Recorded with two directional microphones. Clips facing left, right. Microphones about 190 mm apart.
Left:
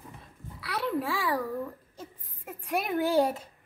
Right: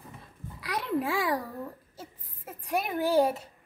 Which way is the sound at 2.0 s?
Centre (ahead or behind).